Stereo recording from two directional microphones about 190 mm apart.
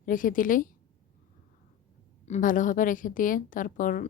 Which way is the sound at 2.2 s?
40° left (ahead or behind).